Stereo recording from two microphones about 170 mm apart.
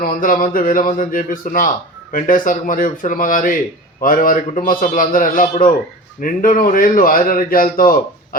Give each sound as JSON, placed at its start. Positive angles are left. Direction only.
{"t": 0.0, "sound": "a man's voice", "side_deg": 55}